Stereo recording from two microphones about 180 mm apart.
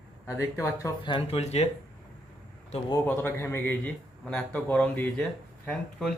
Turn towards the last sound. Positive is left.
turn(degrees=5)  # may be behind; listen again after turning